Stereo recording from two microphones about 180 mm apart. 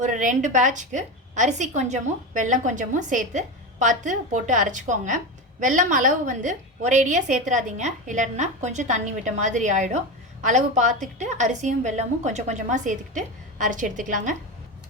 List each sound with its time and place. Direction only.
0.0 s a woman's voice: 45° right (ahead or behind)